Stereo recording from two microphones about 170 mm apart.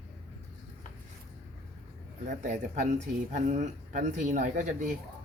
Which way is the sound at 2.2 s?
50° right (ahead or behind).